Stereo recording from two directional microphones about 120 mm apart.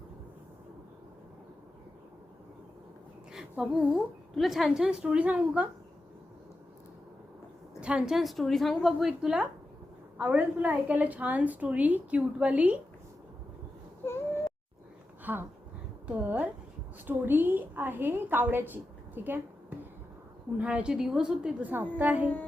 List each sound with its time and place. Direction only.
3.3 s a woman's voice: 5° right (ahead or behind)
7.8 s a woman's voice: 10° right (ahead or behind)
14.0 s a sound: 20° left (ahead or behind)
15.2 s a sound: 15° right (ahead or behind)
16.0 s a woman's voice: 15° right (ahead or behind)
20.6 s a woman's voice: 10° right (ahead or behind)